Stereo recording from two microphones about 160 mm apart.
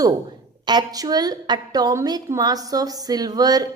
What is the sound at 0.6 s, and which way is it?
A woman's voice, 25° right (ahead or behind).